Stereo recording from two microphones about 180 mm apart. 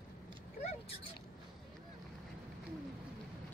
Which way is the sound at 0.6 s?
35° left (ahead or behind).